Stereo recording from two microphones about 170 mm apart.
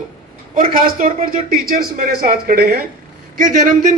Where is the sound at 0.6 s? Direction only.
55° right (ahead or behind).